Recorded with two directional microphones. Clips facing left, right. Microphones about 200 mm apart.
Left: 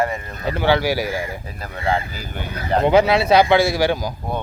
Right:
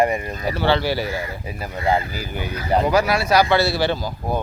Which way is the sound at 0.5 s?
15° left (ahead or behind).